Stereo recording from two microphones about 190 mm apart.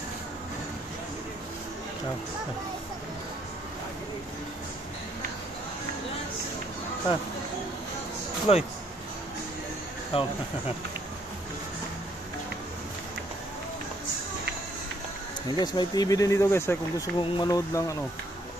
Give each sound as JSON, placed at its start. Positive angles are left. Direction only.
{"t": 8.5, "sound": "speech", "side_deg": 30}
{"t": 10.1, "sound": "speech", "side_deg": 30}
{"t": 15.4, "sound": "speech", "side_deg": 20}